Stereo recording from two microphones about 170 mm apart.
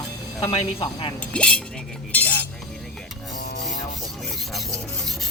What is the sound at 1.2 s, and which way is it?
Speech, 5° left (ahead or behind).